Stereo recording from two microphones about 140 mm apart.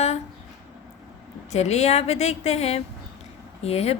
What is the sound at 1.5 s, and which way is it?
A woman's voice, 50° left (ahead or behind).